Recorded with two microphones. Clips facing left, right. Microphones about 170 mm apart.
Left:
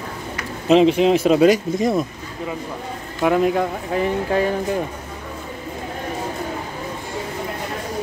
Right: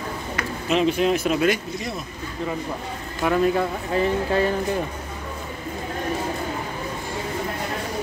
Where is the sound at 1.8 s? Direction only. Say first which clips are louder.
Left 12 dB; 45° left (ahead or behind).